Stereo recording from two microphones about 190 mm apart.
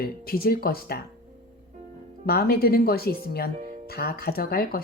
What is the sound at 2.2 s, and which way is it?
Speech, 55° left (ahead or behind).